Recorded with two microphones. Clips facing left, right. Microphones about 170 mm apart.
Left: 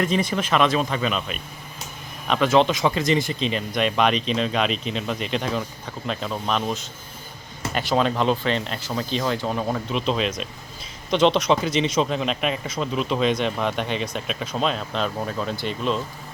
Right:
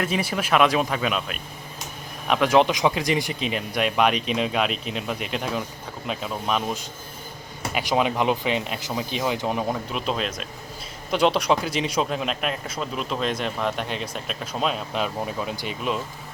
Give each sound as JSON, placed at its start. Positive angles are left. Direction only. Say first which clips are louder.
{"t": 0.0, "sound": "a man's voice", "louder": "left 3 dB", "side_deg": -10}
{"t": 9.7, "sound": "a man's voice", "louder": "left 3 dB", "side_deg": -5}